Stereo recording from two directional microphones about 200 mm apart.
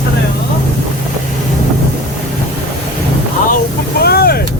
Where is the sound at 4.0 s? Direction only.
50° left (ahead or behind).